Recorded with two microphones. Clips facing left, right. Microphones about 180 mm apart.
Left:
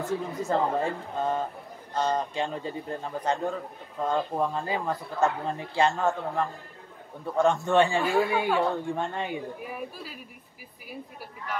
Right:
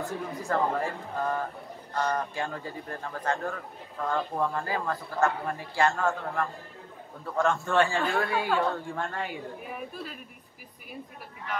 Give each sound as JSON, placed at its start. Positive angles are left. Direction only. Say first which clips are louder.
{"t": 0.2, "sound": "a man's voice", "louder": "left 2 dB", "side_deg": 20}
{"t": 9.6, "sound": "a woman's voice", "louder": "left 1 dB", "side_deg": 0}